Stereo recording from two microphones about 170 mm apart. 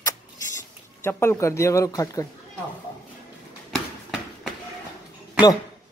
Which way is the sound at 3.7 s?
Centre (ahead or behind).